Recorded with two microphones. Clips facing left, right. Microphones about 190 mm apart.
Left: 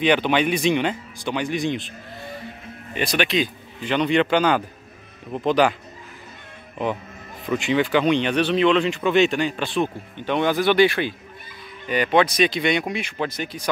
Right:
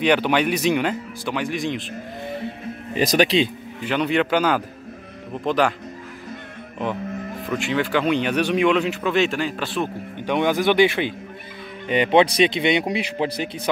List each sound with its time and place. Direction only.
0.0 s speech: 10° right (ahead or behind)
2.9 s speech: 40° right (ahead or behind)
3.8 s speech: 5° right (ahead or behind)
7.4 s speech: centre (ahead or behind)
10.2 s speech: 15° right (ahead or behind)